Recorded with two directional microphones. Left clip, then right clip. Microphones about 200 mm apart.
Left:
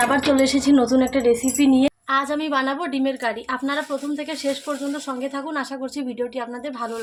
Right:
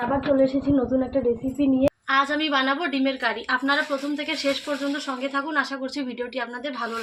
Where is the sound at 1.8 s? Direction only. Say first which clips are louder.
Even; 40° left (ahead or behind).